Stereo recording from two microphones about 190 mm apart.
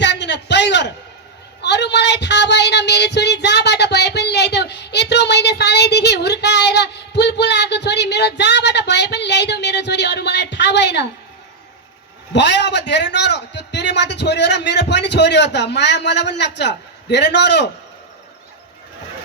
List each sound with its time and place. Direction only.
0.0 s a sound: 65° left (ahead or behind)
1.6 s speech: 65° left (ahead or behind)
12.3 s a man's voice: 65° left (ahead or behind)